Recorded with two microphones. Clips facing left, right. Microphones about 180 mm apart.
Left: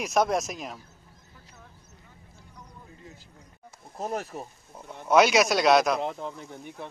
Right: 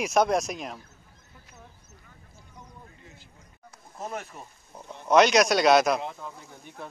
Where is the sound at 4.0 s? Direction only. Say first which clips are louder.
Left 4 dB; 35° left (ahead or behind).